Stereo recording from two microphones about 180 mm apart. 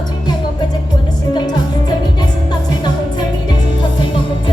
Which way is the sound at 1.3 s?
25° left (ahead or behind).